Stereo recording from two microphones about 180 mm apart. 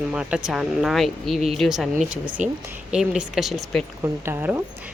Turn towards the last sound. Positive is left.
turn(degrees=-15)  # may be behind; listen again after turning